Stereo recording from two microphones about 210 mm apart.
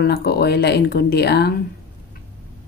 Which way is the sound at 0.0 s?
50° left (ahead or behind).